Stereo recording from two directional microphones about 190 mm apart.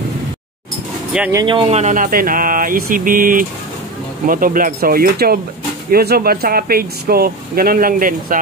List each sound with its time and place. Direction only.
1.3 s speech: 25° right (ahead or behind); by 8.4 s 45° right (ahead or behind)